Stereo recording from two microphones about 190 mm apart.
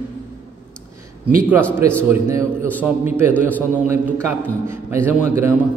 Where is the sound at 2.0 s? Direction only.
10° right (ahead or behind).